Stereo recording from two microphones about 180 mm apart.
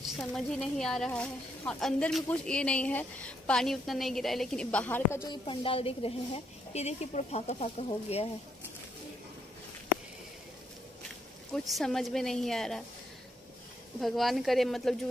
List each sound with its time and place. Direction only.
0.0 s a woman's voice: centre (ahead or behind)
5.3 s a woman's voice: 30° left (ahead or behind)
11.5 s a woman's voice: centre (ahead or behind)
13.9 s a woman's voice: centre (ahead or behind)